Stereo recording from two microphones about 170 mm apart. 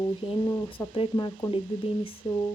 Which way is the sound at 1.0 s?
25° left (ahead or behind).